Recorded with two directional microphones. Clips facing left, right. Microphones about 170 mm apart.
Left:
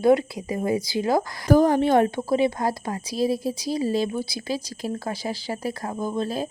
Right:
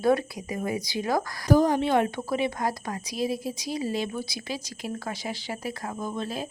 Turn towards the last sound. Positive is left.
turn(degrees=35)  # may be behind; listen again after turning